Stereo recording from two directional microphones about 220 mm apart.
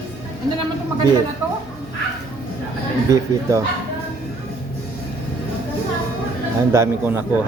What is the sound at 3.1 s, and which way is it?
Speech, 15° right (ahead or behind).